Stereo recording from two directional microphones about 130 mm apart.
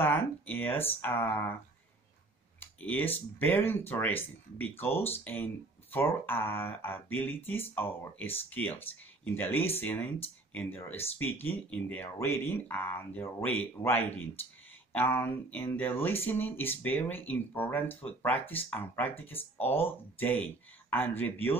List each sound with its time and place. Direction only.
0.0 s speech: 15° left (ahead or behind)
2.6 s speech: 15° left (ahead or behind)